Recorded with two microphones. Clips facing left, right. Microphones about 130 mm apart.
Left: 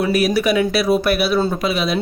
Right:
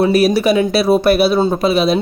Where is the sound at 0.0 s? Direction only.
30° right (ahead or behind).